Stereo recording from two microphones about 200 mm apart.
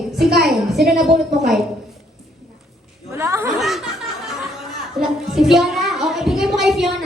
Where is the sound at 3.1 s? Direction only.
10° right (ahead or behind).